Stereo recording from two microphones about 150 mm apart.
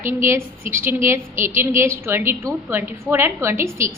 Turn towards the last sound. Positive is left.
turn(degrees=-20)  # may be behind; listen again after turning